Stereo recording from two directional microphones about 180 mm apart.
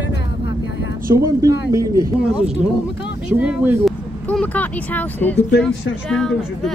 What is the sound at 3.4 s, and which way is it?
Speech, 5° right (ahead or behind).